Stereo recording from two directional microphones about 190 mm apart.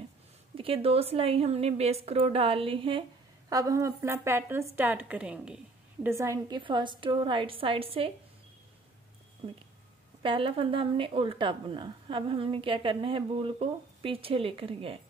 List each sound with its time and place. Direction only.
0.6 s a woman's voice: 30° right (ahead or behind); by 5.6 s 5° right (ahead or behind)
6.0 s speech: 15° right (ahead or behind)
9.4 s speech: 25° right (ahead or behind)